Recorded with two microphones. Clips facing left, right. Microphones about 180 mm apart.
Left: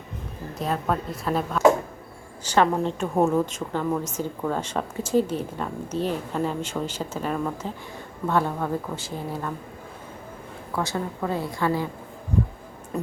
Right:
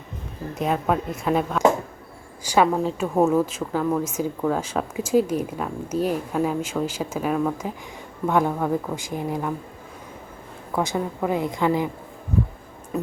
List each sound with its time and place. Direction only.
0.6 s a woman's voice: 5° right (ahead or behind)
10.8 s a woman's voice: 15° right (ahead or behind)